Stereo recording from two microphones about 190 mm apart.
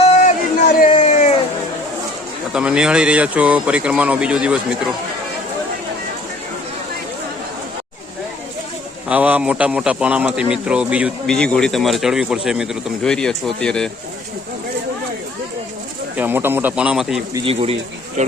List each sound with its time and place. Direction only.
0.0 s a sound: 35° left (ahead or behind)
2.5 s speech: 5° right (ahead or behind)
9.0 s speech: 5° right (ahead or behind)
16.1 s speech: 10° right (ahead or behind)
17.3 s speech: 30° right (ahead or behind)